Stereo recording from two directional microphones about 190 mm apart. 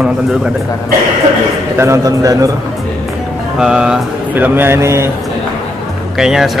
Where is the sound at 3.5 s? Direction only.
5° right (ahead or behind).